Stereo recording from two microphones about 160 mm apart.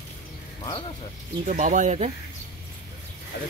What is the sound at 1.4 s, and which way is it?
Speech, 55° right (ahead or behind).